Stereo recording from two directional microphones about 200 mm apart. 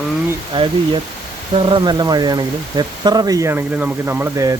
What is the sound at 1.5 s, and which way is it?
Speech, 25° right (ahead or behind).